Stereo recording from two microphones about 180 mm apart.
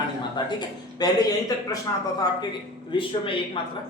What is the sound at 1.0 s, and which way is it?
A man's voice, 20° left (ahead or behind).